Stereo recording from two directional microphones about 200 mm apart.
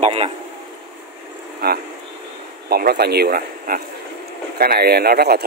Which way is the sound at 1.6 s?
50° right (ahead or behind).